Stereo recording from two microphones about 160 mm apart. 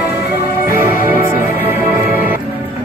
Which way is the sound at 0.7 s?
15° right (ahead or behind).